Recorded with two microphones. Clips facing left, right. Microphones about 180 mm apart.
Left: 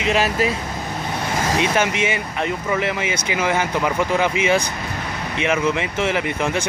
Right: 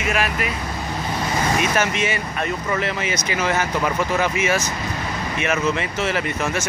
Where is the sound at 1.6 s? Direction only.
15° left (ahead or behind).